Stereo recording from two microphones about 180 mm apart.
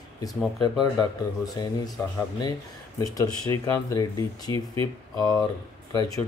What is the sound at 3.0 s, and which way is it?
Speech, 20° left (ahead or behind).